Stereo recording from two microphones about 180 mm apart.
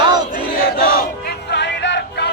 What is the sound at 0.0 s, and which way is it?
Battle cry, 25° right (ahead or behind).